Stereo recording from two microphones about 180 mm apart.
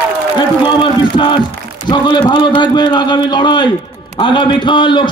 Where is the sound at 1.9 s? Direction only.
25° left (ahead or behind).